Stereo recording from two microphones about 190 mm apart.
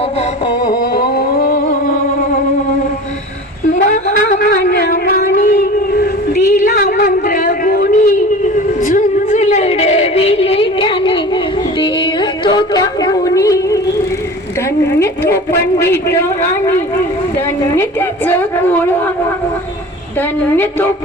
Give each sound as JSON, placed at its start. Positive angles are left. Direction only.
{"t": 0.6, "sound": "music", "side_deg": 50}
{"t": 4.4, "sound": "a sound", "side_deg": 55}
{"t": 8.8, "sound": "music", "side_deg": 40}
{"t": 11.8, "sound": "yodeling", "side_deg": 25}
{"t": 14.8, "sound": "a woman's voice", "side_deg": 15}
{"t": 17.7, "sound": "a woman's voice", "side_deg": 10}
{"t": 20.6, "sound": "a woman's voice", "side_deg": 10}